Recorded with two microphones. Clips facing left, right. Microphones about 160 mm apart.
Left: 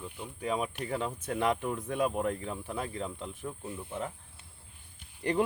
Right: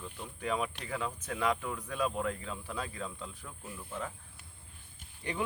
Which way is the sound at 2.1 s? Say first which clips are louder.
Left 3 dB; 20° left (ahead or behind).